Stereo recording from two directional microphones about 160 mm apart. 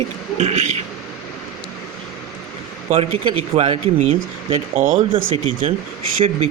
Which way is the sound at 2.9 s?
40° right (ahead or behind).